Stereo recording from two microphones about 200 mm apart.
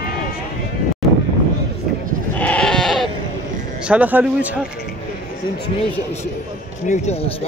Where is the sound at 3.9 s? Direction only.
10° right (ahead or behind).